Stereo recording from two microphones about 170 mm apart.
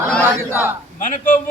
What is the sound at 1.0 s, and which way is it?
Speech, 50° left (ahead or behind).